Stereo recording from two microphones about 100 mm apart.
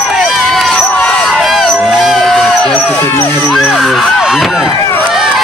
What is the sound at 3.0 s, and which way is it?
Speech, 25° left (ahead or behind).